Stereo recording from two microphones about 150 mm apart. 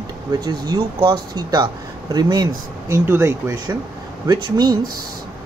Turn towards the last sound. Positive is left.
turn(degrees=-25)  # may be behind; listen again after turning